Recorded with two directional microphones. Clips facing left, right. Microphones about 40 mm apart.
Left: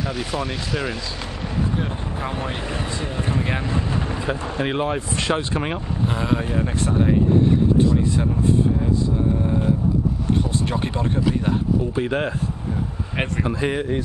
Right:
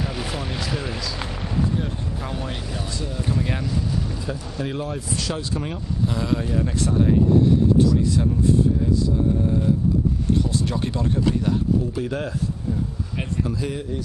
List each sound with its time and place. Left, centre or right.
0.1 s speech: centre
2.2 s speech: left
6.1 s speech: left
10.7 s speech: left